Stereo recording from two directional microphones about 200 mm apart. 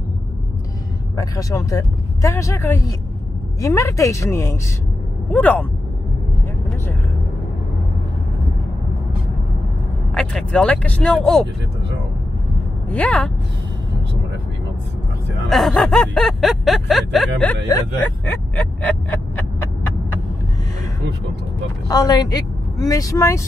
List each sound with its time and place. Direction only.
1.1 s speech: 15° left (ahead or behind)
10.1 s speech: 5° left (ahead or behind)
12.9 s speech: 5° left (ahead or behind)
15.5 s speech: centre (ahead or behind)
18.6 s speech: 10° left (ahead or behind)
21.8 s speech: 20° left (ahead or behind)